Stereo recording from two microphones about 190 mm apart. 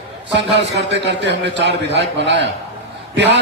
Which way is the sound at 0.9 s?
65° right (ahead or behind).